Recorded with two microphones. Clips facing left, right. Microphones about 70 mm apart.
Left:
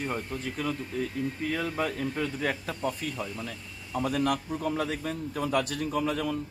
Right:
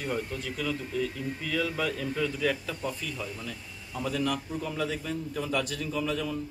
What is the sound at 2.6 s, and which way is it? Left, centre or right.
A man's voice, left.